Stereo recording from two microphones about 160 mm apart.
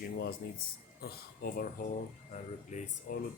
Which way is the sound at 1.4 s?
65° left (ahead or behind).